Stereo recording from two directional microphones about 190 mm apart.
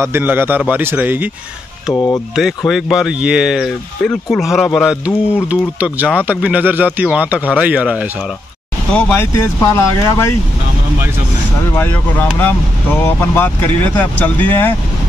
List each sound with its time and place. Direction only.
0.0 s speech: 10° right (ahead or behind)
2.0 s speech: 15° left (ahead or behind)
2.3 s speech: centre (ahead or behind)
8.9 s speech: 10° left (ahead or behind)
11.7 s speech: 10° left (ahead or behind)